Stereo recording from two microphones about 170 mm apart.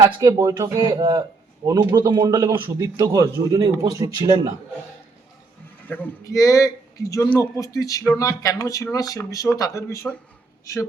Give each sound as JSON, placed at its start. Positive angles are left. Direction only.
{"t": 0.0, "sound": "speech", "side_deg": -20}
{"t": 5.9, "sound": "speech", "side_deg": 15}